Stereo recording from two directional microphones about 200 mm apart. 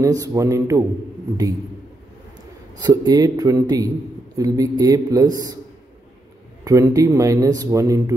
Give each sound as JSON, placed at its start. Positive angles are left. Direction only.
{"t": 0.0, "sound": "a man's voice", "side_deg": -15}
{"t": 2.8, "sound": "a man's voice", "side_deg": -20}
{"t": 6.6, "sound": "a man's voice", "side_deg": -15}